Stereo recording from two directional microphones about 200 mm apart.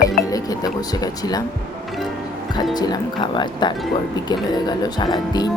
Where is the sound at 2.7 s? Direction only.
20° left (ahead or behind).